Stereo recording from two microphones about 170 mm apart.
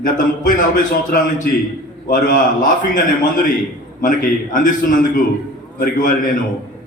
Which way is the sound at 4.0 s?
50° left (ahead or behind).